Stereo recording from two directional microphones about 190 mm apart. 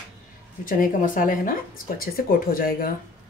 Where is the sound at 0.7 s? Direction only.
45° left (ahead or behind).